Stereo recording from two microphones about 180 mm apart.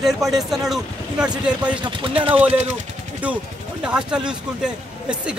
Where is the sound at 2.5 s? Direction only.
40° right (ahead or behind).